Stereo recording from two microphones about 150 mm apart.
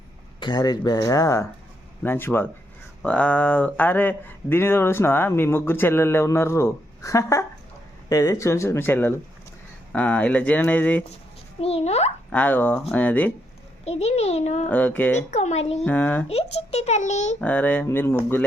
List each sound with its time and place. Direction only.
0.3 s speech: 30° left (ahead or behind); by 11.0 s 10° left (ahead or behind)
11.6 s a child's voice: 45° left (ahead or behind)
12.3 s speech: 10° left (ahead or behind)
13.8 s a child's voice: 45° left (ahead or behind)
14.7 s speech: 10° left (ahead or behind)
15.3 s a child's voice: 50° left (ahead or behind)
15.8 s speech: 10° left (ahead or behind)
16.3 s a child's voice: 45° left (ahead or behind)
17.4 s speech: 10° left (ahead or behind)